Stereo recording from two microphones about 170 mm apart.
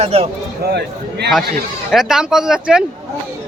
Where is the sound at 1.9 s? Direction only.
Centre (ahead or behind).